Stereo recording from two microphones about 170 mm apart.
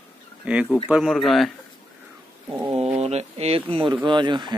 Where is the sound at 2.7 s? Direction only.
40° right (ahead or behind).